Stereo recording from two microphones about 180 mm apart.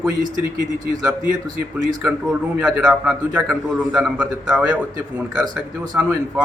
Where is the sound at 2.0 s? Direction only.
5° right (ahead or behind).